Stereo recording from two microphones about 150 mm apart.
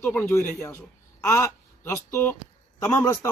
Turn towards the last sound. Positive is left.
turn(degrees=15)  # may be behind; listen again after turning